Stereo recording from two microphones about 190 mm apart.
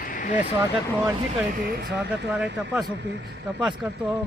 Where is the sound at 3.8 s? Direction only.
Centre (ahead or behind).